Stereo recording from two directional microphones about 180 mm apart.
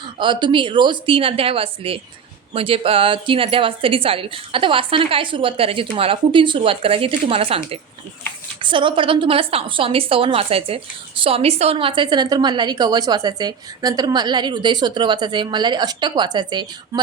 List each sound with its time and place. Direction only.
0.2 s a woman's voice: 25° right (ahead or behind)